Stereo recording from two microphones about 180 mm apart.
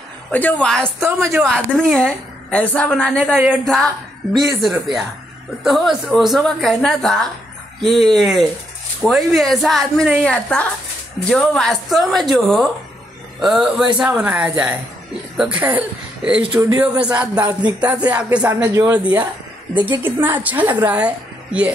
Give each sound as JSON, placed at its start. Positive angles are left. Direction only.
{"t": 0.3, "sound": "a woman's voice", "side_deg": 10}
{"t": 1.0, "sound": "speech", "side_deg": -15}
{"t": 1.5, "sound": "a woman's voice", "side_deg": 0}
{"t": 16.4, "sound": "speech", "side_deg": -20}
{"t": 16.7, "sound": "speech", "side_deg": -5}
{"t": 17.6, "sound": "speech", "side_deg": -25}
{"t": 17.9, "sound": "speech", "side_deg": -5}
{"t": 18.8, "sound": "speech", "side_deg": -20}
{"t": 19.7, "sound": "speech", "side_deg": -10}